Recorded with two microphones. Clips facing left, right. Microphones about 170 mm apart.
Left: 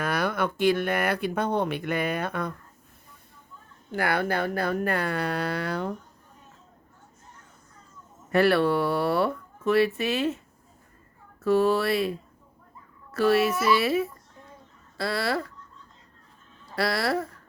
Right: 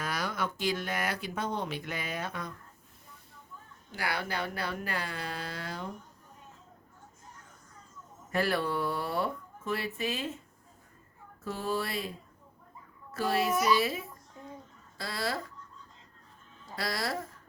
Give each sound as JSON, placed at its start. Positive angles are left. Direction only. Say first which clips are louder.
{"t": 0.0, "sound": "speech", "louder": "left 7 dB", "side_deg": 60}
{"t": 3.9, "sound": "speech", "louder": "left 9 dB", "side_deg": 55}
{"t": 8.3, "sound": "speech", "louder": "left 9 dB", "side_deg": 70}
{"t": 11.4, "sound": "a child's voice", "louder": "left 12 dB", "side_deg": 70}
{"t": 16.7, "sound": "speech", "louder": "left 8 dB", "side_deg": 65}